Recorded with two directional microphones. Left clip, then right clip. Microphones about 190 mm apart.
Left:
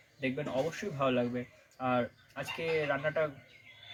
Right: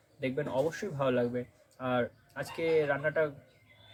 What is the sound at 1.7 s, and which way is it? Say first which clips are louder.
Speech: even; 30° right (ahead or behind).